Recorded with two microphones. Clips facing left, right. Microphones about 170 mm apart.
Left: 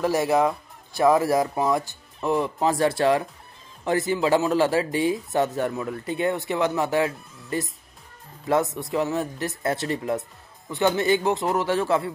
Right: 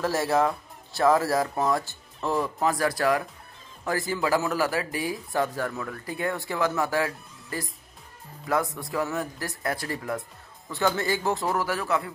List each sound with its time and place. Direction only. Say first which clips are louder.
0.0 s speech: left 3 dB; 15° left (ahead or behind)